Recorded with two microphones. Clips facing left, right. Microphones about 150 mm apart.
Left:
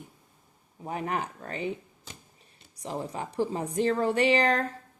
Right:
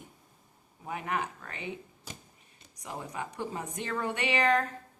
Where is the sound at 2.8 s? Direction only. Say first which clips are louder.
Left 5 dB; 35° left (ahead or behind).